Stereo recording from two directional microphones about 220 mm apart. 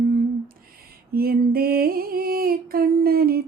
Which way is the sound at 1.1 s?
45° right (ahead or behind).